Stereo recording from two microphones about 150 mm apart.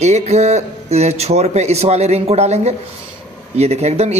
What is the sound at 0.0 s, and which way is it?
Speech, 45° right (ahead or behind).